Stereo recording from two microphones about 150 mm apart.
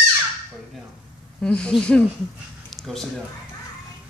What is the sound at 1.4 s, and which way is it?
Speech, 5° left (ahead or behind).